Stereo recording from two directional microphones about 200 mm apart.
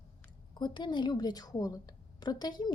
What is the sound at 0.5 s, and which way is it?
A woman's voice, 20° left (ahead or behind).